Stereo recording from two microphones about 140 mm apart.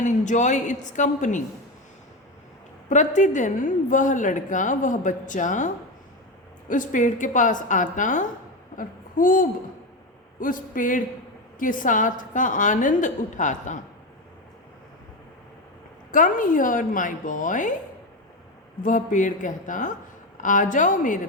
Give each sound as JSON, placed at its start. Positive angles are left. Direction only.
{"t": 0.0, "sound": "a woman's voice", "side_deg": 60}
{"t": 2.9, "sound": "a woman's voice", "side_deg": 60}
{"t": 16.1, "sound": "a woman's voice", "side_deg": 70}
{"t": 18.8, "sound": "a woman's voice", "side_deg": 70}